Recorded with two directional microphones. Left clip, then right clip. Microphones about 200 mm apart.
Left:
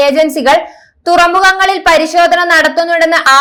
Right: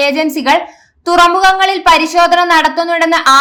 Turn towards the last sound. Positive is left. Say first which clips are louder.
# left 1 dB
turn(degrees=20)  # may be behind; listen again after turning